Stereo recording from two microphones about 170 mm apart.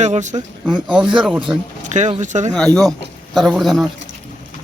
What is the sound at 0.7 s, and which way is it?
Speech, 5° right (ahead or behind).